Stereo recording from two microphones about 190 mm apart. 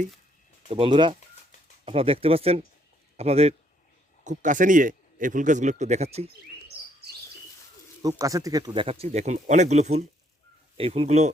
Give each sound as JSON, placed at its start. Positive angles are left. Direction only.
{"t": 0.7, "sound": "a man's voice", "side_deg": -25}
{"t": 8.0, "sound": "a man's voice", "side_deg": -20}